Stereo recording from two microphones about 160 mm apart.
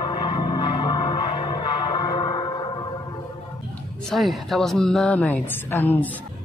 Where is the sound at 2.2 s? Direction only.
35° left (ahead or behind).